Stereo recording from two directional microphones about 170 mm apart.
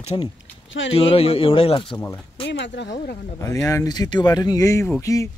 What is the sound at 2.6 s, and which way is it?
Speech, 90° left.